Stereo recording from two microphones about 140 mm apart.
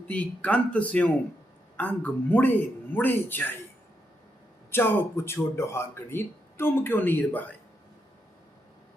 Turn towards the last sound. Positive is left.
turn(degrees=10)  # may be behind; listen again after turning